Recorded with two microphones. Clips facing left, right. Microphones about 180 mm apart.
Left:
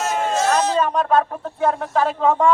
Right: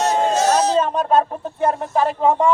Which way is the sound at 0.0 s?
40° right (ahead or behind).